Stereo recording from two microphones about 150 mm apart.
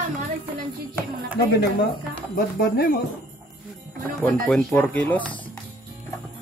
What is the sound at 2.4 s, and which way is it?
Speech, 80° left.